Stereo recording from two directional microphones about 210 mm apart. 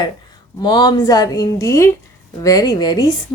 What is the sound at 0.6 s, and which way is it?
A woman's voice, 20° left (ahead or behind).